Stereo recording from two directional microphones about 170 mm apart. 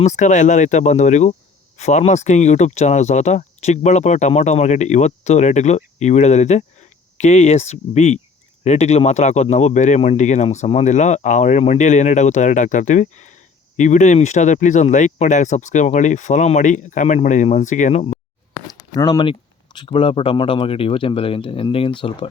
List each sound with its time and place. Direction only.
0.0 s speech: 45° left (ahead or behind)
18.9 s speech: 25° left (ahead or behind)